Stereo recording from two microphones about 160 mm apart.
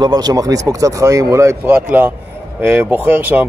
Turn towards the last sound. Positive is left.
turn(degrees=-15)  # may be behind; listen again after turning